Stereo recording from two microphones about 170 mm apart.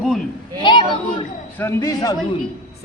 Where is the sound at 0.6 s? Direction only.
25° left (ahead or behind).